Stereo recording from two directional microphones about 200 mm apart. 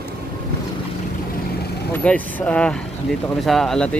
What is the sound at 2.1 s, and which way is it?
Speech, 5° left (ahead or behind).